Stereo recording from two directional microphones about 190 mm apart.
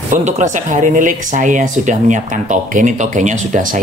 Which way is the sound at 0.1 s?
40° right (ahead or behind).